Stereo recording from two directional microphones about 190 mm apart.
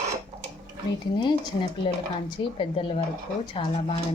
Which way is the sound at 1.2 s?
25° left (ahead or behind).